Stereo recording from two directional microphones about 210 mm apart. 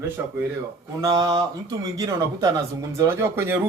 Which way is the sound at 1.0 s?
15° right (ahead or behind).